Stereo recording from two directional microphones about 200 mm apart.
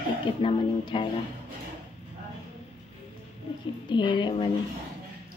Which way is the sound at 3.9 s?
25° left (ahead or behind).